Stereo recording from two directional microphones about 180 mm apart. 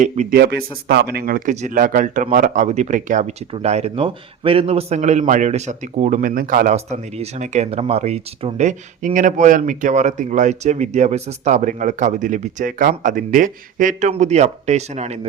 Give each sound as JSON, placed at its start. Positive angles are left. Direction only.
{"t": 0.0, "sound": "speech", "side_deg": -45}
{"t": 0.3, "sound": "a man's voice", "side_deg": -65}
{"t": 6.7, "sound": "a man's voice", "side_deg": -40}